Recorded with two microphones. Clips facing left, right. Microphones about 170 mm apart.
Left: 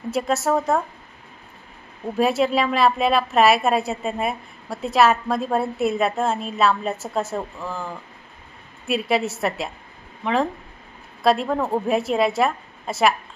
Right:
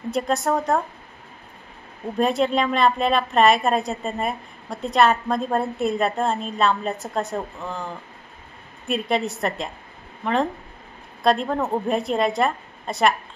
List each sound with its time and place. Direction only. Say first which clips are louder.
0.1 s a woman's voice: left 1 dB; 5° left (ahead or behind)
2.1 s a woman's voice: left 1 dB; 5° left (ahead or behind)